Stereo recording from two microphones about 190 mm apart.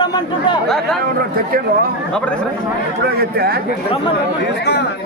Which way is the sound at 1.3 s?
50° right (ahead or behind).